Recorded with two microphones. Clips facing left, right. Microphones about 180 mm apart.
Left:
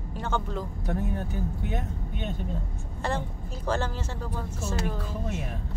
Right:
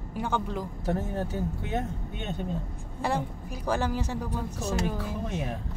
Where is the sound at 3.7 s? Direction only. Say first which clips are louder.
Right 2 dB; 15° right (ahead or behind).